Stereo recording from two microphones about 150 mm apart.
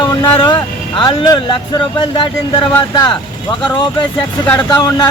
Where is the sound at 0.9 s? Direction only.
30° left (ahead or behind).